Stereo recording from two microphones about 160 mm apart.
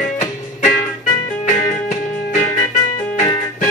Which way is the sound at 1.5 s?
50° left (ahead or behind).